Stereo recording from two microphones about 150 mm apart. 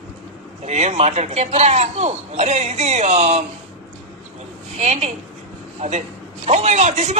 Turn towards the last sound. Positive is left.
turn(degrees=-50)  # may be behind; listen again after turning